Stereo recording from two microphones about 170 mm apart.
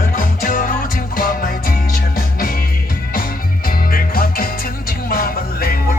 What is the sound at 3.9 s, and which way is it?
Music, 60° left (ahead or behind).